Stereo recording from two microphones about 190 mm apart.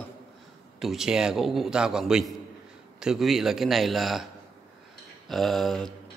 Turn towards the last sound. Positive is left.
turn(degrees=0)  # may be behind; listen again after turning